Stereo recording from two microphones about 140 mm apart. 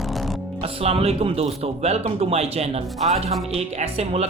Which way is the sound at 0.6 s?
45° right (ahead or behind).